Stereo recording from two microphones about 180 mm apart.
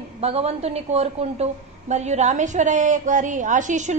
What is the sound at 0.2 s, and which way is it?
A woman's voice, 35° right (ahead or behind).